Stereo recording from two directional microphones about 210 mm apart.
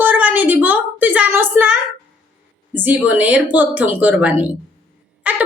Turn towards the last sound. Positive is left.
turn(degrees=-5)  # may be behind; listen again after turning